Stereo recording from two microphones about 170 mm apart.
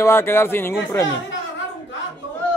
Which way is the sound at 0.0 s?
15° left (ahead or behind).